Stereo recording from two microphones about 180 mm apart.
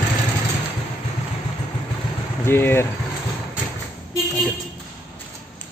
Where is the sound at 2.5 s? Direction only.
15° left (ahead or behind).